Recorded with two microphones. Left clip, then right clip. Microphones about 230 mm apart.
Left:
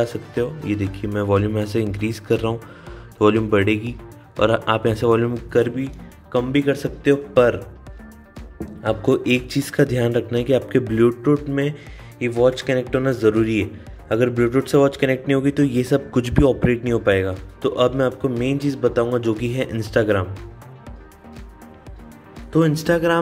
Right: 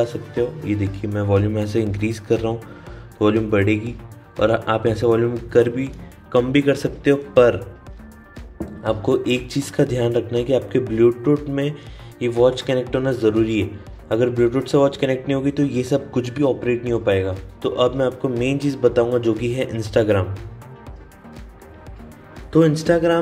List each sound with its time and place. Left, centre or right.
0.0 s speech: centre
8.8 s speech: centre
22.5 s speech: centre